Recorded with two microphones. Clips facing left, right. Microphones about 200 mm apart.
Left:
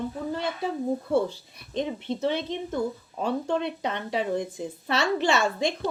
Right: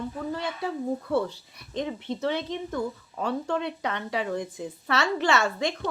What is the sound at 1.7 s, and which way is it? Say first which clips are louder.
Speech: left 2 dB; 20° left (ahead or behind).